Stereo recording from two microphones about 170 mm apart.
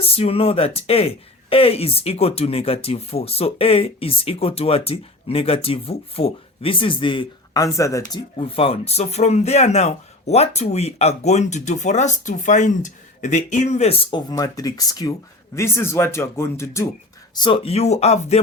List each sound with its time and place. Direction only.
0.0 s speech: 35° left (ahead or behind); by 8.2 s 20° left (ahead or behind)
8.4 s speech: 35° left (ahead or behind); by 16.9 s 15° left (ahead or behind)
17.3 s speech: 30° left (ahead or behind)